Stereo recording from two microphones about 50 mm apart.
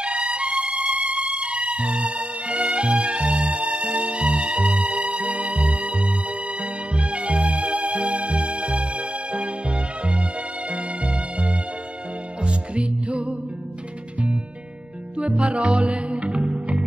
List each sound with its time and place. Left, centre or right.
0.0 s music: right
15.1 s music: right